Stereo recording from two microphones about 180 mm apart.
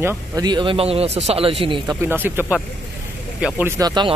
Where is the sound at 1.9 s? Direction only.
10° right (ahead or behind).